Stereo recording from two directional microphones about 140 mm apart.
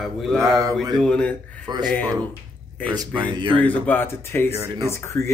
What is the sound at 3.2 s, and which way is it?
Speech, 35° right (ahead or behind).